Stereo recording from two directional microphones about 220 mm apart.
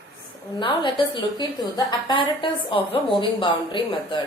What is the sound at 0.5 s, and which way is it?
A woman's voice, 20° left (ahead or behind).